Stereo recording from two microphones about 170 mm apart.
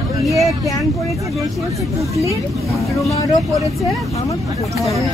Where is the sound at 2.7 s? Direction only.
20° left (ahead or behind).